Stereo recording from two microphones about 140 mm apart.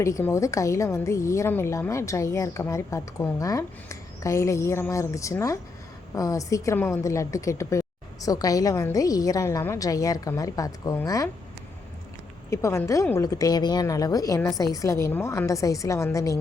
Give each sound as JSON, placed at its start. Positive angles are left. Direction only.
{"t": 0.0, "sound": "a woman's voice", "side_deg": 20}
{"t": 12.5, "sound": "a woman's voice", "side_deg": 20}